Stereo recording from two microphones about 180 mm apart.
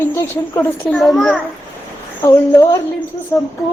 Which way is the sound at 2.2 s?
20° left (ahead or behind).